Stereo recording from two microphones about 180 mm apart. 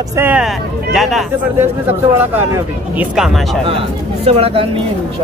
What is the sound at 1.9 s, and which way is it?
Speech, 10° right (ahead or behind).